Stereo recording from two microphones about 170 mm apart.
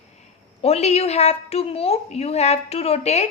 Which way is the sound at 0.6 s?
40° left (ahead or behind).